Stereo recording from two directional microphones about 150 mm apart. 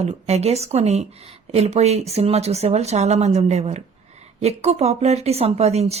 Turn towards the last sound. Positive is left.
turn(degrees=-45)  # may be behind; listen again after turning